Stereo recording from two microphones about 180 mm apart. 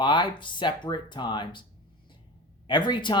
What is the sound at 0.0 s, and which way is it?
Speech, 25° left (ahead or behind).